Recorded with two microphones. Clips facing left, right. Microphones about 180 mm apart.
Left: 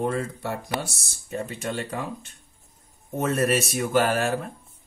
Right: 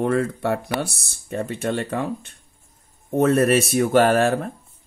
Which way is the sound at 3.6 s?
60° right (ahead or behind).